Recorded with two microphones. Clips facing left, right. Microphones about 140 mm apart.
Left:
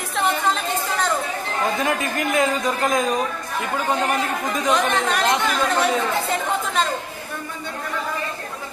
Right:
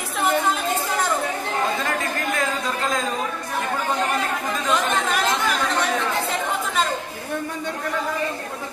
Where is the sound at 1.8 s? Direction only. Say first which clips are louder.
Left 3 dB; 20° left (ahead or behind).